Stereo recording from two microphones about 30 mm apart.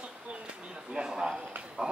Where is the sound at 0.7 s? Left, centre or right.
Right.